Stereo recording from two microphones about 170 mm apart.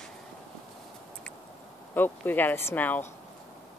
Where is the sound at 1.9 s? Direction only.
10° left (ahead or behind).